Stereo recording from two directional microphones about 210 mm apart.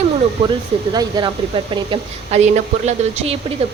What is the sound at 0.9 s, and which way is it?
A woman's voice, 20° right (ahead or behind).